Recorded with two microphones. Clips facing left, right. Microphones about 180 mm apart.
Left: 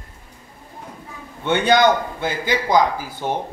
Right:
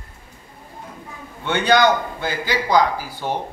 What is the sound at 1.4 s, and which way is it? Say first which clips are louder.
A man's voice: left 1 dB; 20° left (ahead or behind).